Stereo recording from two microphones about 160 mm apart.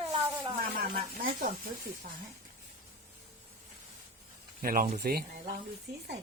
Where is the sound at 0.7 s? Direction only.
65° right (ahead or behind).